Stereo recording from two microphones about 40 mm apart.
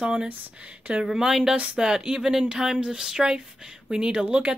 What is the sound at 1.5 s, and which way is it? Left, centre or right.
Speech, right.